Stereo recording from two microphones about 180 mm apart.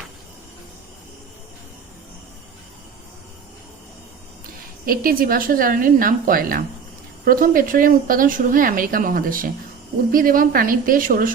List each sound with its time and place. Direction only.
4.9 s a woman's voice: 55° right (ahead or behind)